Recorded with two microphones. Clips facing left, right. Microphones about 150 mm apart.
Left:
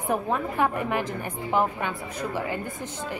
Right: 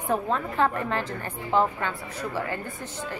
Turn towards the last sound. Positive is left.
turn(degrees=15)  # may be behind; listen again after turning